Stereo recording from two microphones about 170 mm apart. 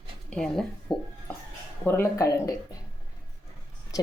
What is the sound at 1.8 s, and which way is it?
Speech, 15° left (ahead or behind).